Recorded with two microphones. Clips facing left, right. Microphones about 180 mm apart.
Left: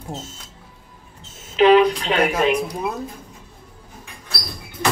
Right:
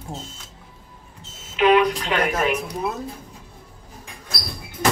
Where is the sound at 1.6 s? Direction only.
25° left (ahead or behind).